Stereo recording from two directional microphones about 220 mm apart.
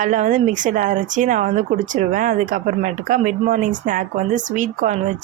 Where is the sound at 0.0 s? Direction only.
35° right (ahead or behind).